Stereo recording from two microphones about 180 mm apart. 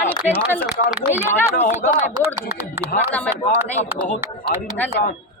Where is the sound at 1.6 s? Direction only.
35° left (ahead or behind).